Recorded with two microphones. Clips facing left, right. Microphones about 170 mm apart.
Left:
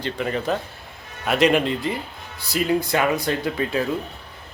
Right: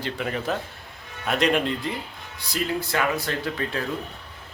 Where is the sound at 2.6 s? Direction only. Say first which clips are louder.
Left 5 dB; 20° left (ahead or behind).